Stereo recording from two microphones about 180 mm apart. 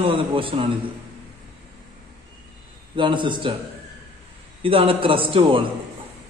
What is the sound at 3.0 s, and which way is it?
Speech, 25° right (ahead or behind).